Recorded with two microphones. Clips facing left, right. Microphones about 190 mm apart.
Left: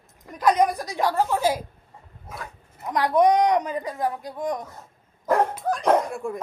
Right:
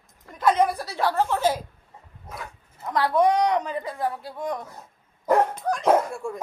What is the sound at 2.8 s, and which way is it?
Speech, 15° left (ahead or behind).